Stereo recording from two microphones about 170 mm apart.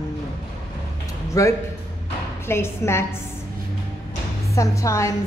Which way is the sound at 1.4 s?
20° left (ahead or behind).